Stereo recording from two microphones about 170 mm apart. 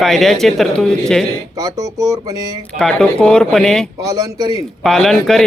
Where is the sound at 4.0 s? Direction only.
20° right (ahead or behind).